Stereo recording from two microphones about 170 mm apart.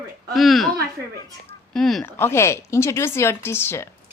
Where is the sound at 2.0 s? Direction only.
15° left (ahead or behind).